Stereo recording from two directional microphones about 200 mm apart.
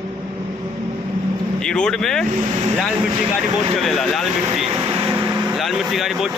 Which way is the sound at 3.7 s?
Centre (ahead or behind).